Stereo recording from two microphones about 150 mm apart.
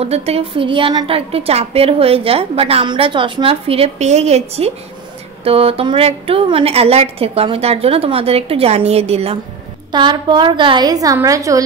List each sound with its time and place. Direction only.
0.0 s a woman's voice: 45° right (ahead or behind)
9.8 s a woman's voice: 30° right (ahead or behind)